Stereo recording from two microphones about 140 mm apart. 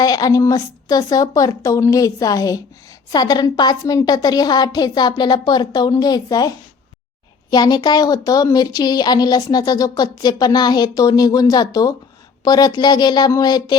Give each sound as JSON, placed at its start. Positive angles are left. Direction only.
{"t": 0.0, "sound": "speech", "side_deg": 25}
{"t": 7.5, "sound": "speech", "side_deg": 30}